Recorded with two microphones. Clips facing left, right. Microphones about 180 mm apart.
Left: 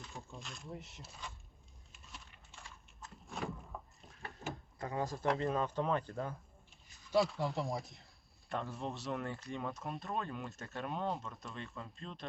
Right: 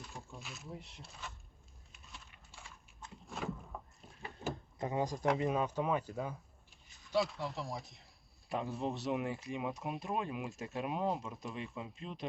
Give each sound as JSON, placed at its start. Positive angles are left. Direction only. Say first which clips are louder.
{"t": 0.0, "sound": "speech", "louder": "even", "side_deg": 0}
{"t": 1.9, "sound": "a sound", "louder": "even", "side_deg": 0}
{"t": 2.5, "sound": "rowboat", "louder": "even", "side_deg": 0}
{"t": 4.2, "sound": "drawer open or close", "louder": "right 3 dB", "side_deg": 0}
{"t": 4.8, "sound": "speech", "louder": "right 3 dB", "side_deg": -20}